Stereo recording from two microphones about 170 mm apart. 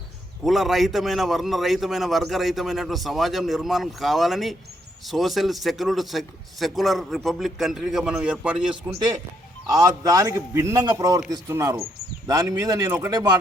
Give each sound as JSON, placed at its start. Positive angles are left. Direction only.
{"t": 0.4, "sound": "a man's voice", "side_deg": 0}
{"t": 9.6, "sound": "a man's voice", "side_deg": -20}